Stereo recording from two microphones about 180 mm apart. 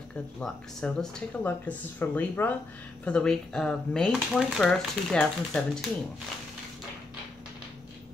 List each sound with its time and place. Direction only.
0.4 s speech: centre (ahead or behind)